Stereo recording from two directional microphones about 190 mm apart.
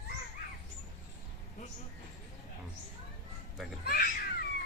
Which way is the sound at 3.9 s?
50° left (ahead or behind).